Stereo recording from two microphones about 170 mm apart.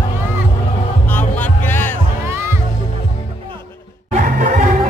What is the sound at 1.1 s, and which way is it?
Music, 10° left (ahead or behind).